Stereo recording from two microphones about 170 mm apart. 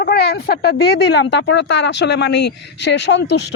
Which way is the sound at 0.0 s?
65° left (ahead or behind).